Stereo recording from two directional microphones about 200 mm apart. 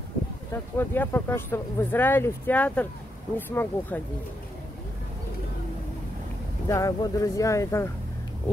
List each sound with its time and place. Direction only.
0.5 s speech: 10° left (ahead or behind)
6.7 s speech: 15° left (ahead or behind)